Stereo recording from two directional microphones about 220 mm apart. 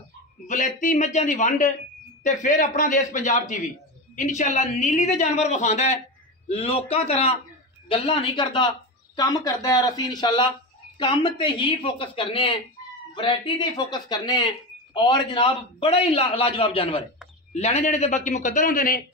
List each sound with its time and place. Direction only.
0.5 s a woman's voice: 35° left (ahead or behind)